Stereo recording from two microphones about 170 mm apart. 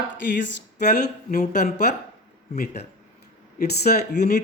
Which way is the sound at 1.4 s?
45° left (ahead or behind).